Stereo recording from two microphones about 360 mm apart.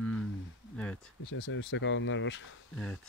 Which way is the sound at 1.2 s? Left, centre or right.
Left.